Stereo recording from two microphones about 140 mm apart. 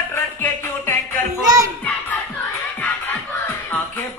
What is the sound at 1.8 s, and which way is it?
Music, 10° left (ahead or behind).